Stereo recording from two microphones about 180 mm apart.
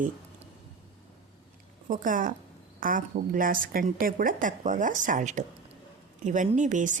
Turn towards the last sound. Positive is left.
turn(degrees=-45)  # may be behind; listen again after turning